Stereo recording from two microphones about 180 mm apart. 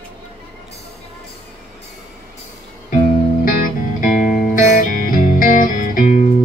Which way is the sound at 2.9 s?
50° left (ahead or behind).